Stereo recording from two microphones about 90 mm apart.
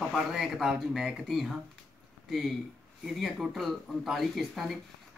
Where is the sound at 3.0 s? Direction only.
Centre (ahead or behind).